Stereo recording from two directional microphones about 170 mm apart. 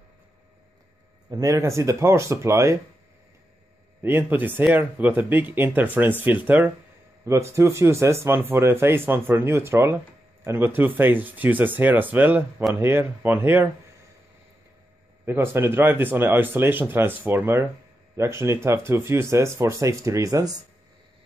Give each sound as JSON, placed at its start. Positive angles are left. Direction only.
{"t": 1.3, "sound": "speech", "side_deg": -20}
{"t": 4.0, "sound": "speech", "side_deg": -10}
{"t": 15.2, "sound": "speech", "side_deg": -15}